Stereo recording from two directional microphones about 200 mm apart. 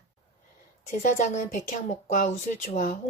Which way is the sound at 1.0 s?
40° left (ahead or behind).